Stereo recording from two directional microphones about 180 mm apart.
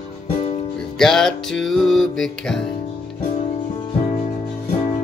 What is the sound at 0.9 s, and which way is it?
Music, 5° left (ahead or behind).